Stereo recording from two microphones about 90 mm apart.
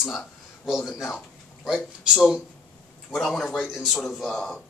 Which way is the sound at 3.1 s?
5° left (ahead or behind).